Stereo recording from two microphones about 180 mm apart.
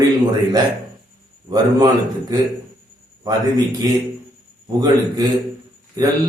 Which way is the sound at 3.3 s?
20° right (ahead or behind).